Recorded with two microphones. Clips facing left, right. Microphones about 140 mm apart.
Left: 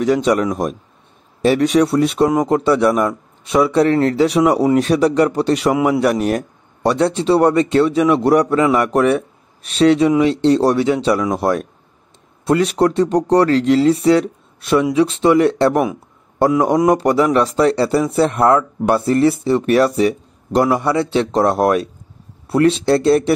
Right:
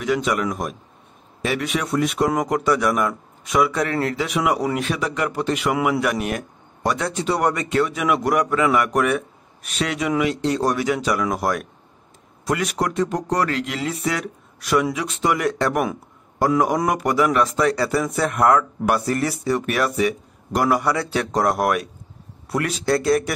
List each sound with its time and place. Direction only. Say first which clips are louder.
0.0 s speech: left 7 dB; 35° left (ahead or behind)